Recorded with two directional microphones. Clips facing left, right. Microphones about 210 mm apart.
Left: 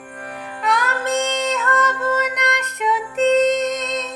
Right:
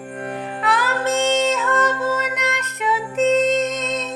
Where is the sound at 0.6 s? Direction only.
Centre (ahead or behind).